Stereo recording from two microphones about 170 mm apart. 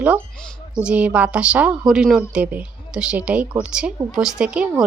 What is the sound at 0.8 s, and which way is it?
Speech, 5° right (ahead or behind).